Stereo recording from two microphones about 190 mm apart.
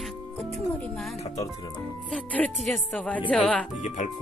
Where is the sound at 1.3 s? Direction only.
20° left (ahead or behind).